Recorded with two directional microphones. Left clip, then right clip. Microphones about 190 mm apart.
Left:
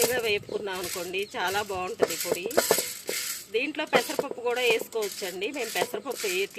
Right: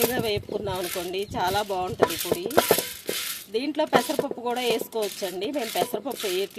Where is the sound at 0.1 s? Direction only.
55° right (ahead or behind).